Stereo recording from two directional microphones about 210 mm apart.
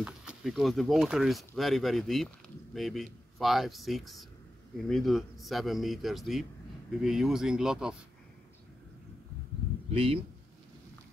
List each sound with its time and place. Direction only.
0.0 s speech: 5° right (ahead or behind)
9.8 s a man's voice: 25° right (ahead or behind)